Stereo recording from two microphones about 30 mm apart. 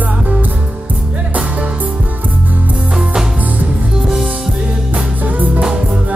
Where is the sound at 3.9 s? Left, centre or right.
Centre.